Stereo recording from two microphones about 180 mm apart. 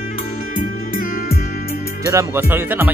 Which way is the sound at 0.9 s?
55° left (ahead or behind).